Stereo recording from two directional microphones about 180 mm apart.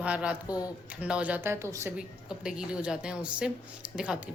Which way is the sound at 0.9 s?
5° right (ahead or behind).